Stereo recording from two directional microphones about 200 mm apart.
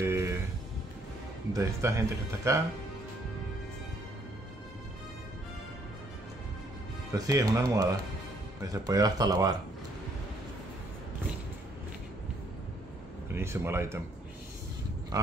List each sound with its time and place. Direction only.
0.0 s music: 15° right (ahead or behind)
1.5 s speech: 15° right (ahead or behind)
7.1 s speech: 15° right (ahead or behind)
13.3 s speech: 10° right (ahead or behind)